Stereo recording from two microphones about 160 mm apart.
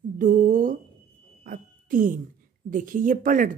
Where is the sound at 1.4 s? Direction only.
55° right (ahead or behind).